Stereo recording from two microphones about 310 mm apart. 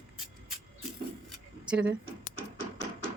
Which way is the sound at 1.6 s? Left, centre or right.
Centre.